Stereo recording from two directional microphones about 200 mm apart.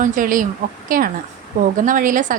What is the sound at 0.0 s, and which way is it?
A woman's voice, 40° right (ahead or behind).